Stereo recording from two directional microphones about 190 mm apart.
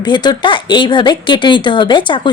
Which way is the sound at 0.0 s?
25° left (ahead or behind).